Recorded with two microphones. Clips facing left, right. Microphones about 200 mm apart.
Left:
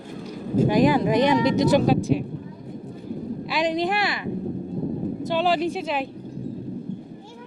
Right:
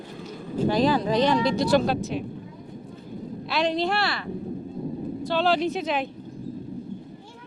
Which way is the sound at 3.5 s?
15° left (ahead or behind).